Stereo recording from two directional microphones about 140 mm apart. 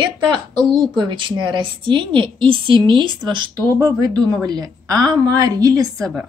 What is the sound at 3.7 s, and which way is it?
A woman's voice, 25° right (ahead or behind).